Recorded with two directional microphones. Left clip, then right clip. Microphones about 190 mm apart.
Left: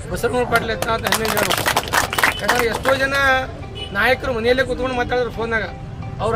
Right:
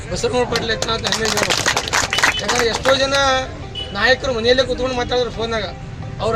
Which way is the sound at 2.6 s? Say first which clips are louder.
Right 2 dB; 10° right (ahead or behind).